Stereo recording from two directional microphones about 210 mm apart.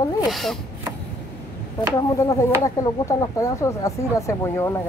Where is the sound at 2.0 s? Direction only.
15° left (ahead or behind).